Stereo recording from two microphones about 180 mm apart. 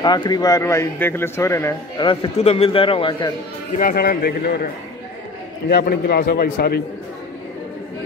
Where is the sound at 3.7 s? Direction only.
55° left (ahead or behind).